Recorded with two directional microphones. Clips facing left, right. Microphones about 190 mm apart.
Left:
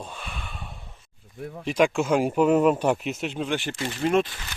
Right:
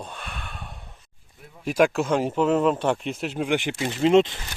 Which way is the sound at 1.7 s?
5° right (ahead or behind).